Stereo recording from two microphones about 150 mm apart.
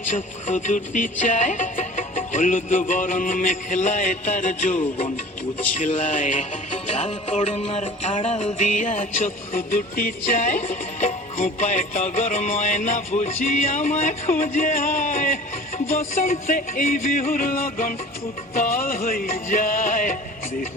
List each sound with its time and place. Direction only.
0.1 s music: 55° left (ahead or behind)
9.7 s music: 65° left (ahead or behind)